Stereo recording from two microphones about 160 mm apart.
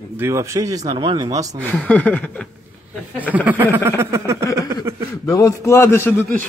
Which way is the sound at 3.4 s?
10° right (ahead or behind).